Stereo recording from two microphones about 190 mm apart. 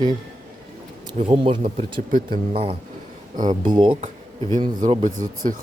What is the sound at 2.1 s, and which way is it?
Speech, 45° right (ahead or behind).